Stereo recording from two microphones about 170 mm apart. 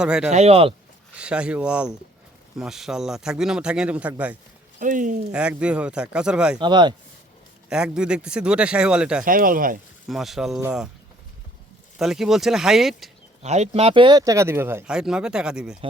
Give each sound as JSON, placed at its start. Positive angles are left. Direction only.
{"t": 0.0, "sound": "speech", "side_deg": -5}
{"t": 0.3, "sound": "speech", "side_deg": -40}
{"t": 1.1, "sound": "speech", "side_deg": -5}
{"t": 4.8, "sound": "speech", "side_deg": -50}
{"t": 5.3, "sound": "speech", "side_deg": -5}
{"t": 6.6, "sound": "speech", "side_deg": -25}
{"t": 7.7, "sound": "speech", "side_deg": -5}
{"t": 9.2, "sound": "speech", "side_deg": -55}
{"t": 10.1, "sound": "speech", "side_deg": 0}
{"t": 11.9, "sound": "speech", "side_deg": 0}
{"t": 13.4, "sound": "speech", "side_deg": -40}